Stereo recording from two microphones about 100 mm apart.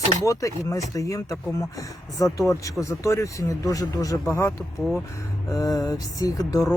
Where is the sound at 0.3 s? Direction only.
30° left (ahead or behind).